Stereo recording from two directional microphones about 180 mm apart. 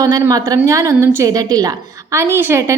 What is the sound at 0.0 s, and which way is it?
A woman's voice, 20° right (ahead or behind).